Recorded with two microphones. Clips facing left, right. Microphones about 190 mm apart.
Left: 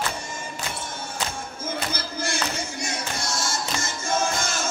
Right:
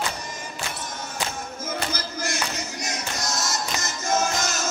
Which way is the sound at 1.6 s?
30° left (ahead or behind).